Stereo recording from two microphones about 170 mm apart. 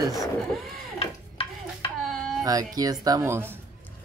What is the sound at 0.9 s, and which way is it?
Stir, 35° left (ahead or behind).